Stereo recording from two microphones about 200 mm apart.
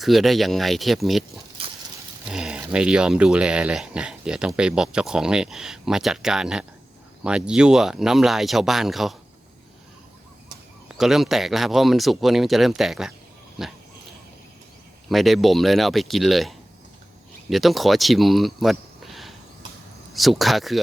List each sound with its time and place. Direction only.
0.0 s speech: centre (ahead or behind)
1.6 s a sound: 30° right (ahead or behind)
2.3 s speech: 5° right (ahead or behind)
10.8 s speech: centre (ahead or behind)
15.1 s speech: centre (ahead or behind)